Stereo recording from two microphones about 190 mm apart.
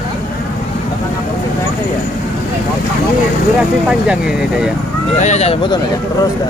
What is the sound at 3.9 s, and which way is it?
Speech, 5° right (ahead or behind).